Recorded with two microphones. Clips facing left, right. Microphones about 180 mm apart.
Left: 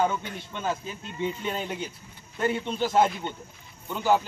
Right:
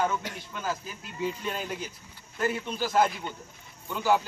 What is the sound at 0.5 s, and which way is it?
A man's voice, 25° left (ahead or behind).